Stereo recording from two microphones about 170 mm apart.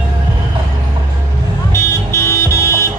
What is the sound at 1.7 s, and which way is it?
Vehicle, 15° left (ahead or behind).